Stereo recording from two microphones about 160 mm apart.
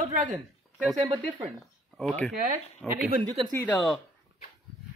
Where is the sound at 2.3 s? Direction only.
50° right (ahead or behind).